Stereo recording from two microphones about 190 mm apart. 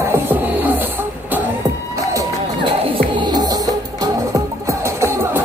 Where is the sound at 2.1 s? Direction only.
15° right (ahead or behind).